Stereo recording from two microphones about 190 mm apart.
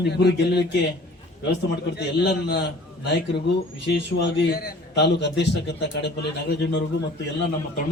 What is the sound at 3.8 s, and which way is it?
A man's voice, 65° left (ahead or behind).